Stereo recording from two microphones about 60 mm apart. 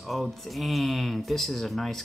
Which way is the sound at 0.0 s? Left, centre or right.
Centre.